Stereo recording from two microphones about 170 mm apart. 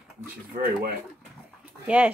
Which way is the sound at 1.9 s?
5° right (ahead or behind).